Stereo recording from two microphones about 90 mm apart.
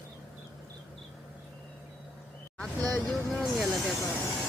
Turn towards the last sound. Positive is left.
turn(degrees=0)  # may be behind; listen again after turning